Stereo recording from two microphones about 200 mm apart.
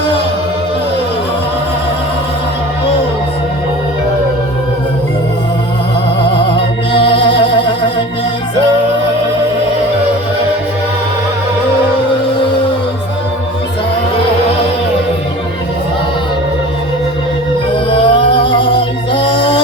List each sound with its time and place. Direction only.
6.9 s music: 25° left (ahead or behind)
17.9 s music: 25° left (ahead or behind)